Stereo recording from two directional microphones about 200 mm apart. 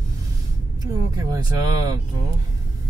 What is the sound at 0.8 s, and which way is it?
Vehicle, 15° right (ahead or behind).